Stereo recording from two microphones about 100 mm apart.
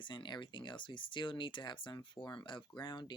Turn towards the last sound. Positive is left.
turn(degrees=45)  # may be behind; listen again after turning